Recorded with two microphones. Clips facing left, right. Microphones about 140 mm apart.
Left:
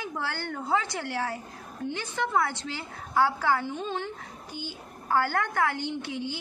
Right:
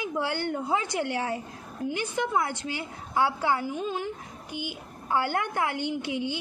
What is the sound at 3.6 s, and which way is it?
A woman's voice, 5° right (ahead or behind).